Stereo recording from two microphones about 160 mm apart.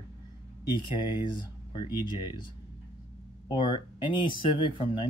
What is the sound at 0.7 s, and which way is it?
Speech, 30° left (ahead or behind).